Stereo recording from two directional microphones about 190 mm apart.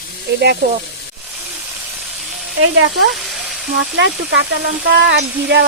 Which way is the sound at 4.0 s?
65° right (ahead or behind).